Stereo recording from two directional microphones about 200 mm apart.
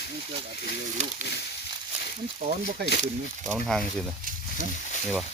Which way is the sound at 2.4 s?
50° right (ahead or behind).